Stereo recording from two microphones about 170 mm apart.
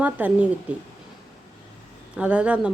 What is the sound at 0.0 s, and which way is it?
Speech, 10° right (ahead or behind).